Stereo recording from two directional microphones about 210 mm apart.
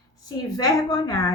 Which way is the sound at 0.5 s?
20° left (ahead or behind).